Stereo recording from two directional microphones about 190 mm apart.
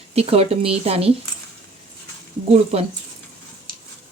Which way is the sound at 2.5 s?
30° right (ahead or behind).